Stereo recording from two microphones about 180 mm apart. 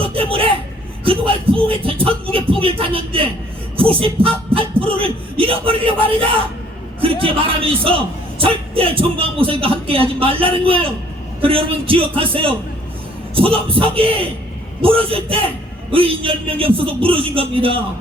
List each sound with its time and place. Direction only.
0.0 s vehicle: 30° right (ahead or behind)
1.0 s music: 30° right (ahead or behind)
3.8 s a man's voice: 30° right (ahead or behind)